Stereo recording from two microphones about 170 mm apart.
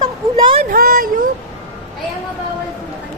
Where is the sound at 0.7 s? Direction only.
60° right (ahead or behind).